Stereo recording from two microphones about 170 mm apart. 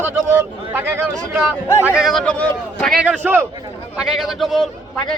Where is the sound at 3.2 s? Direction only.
10° right (ahead or behind).